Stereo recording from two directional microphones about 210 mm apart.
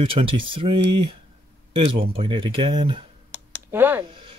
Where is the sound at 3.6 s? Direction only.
10° right (ahead or behind).